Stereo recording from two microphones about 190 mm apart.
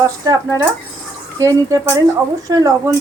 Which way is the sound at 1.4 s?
20° right (ahead or behind).